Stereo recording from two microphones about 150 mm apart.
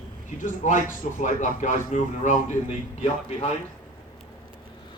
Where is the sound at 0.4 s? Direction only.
55° left (ahead or behind).